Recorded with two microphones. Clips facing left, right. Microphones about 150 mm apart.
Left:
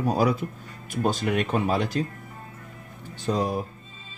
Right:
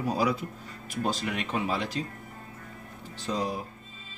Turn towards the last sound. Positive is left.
turn(degrees=50)  # may be behind; listen again after turning